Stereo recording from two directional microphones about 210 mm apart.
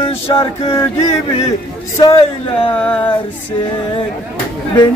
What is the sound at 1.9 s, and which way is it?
Speech, 20° left (ahead or behind).